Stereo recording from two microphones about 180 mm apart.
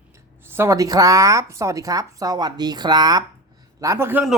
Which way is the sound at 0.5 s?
15° right (ahead or behind).